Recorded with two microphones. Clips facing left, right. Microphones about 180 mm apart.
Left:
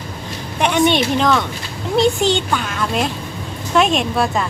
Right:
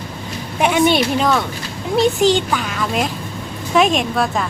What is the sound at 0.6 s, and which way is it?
A woman's voice, 5° right (ahead or behind).